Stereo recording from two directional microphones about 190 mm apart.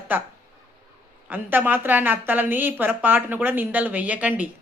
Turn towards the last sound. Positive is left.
turn(degrees=-10)  # may be behind; listen again after turning